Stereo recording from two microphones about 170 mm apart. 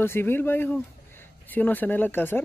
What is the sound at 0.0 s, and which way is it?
Speech, 15° left (ahead or behind).